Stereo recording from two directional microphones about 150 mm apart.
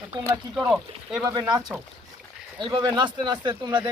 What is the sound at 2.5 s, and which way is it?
Speech, 30° right (ahead or behind).